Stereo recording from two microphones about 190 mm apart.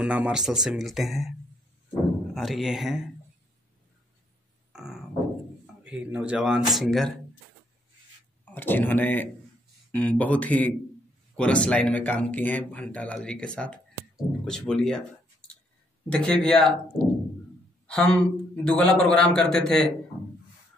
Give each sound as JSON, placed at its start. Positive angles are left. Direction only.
{"t": 0.0, "sound": "a man's voice", "side_deg": -5}
{"t": 2.3, "sound": "a man's voice", "side_deg": 0}
{"t": 4.7, "sound": "a sound", "side_deg": -5}
{"t": 5.9, "sound": "a man's voice", "side_deg": -5}
{"t": 8.5, "sound": "speech", "side_deg": 10}
{"t": 14.1, "sound": "clicking", "side_deg": 5}
{"t": 16.1, "sound": "a man's voice", "side_deg": 5}
{"t": 17.8, "sound": "a man's voice", "side_deg": 5}